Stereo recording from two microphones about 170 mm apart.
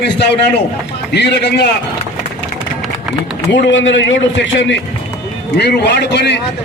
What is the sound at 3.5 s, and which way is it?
A man's voice, 90° left.